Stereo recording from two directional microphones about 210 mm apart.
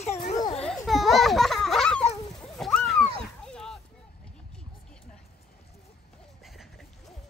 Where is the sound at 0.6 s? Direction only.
Centre (ahead or behind).